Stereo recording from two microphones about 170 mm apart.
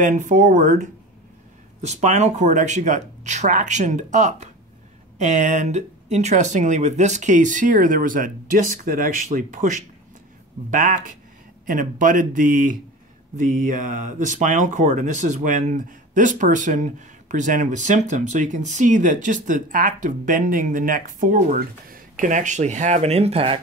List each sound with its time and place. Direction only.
0.0 s speech: 50° right (ahead or behind)